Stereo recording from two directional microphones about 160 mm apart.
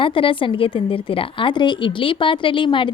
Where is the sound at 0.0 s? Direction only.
35° left (ahead or behind).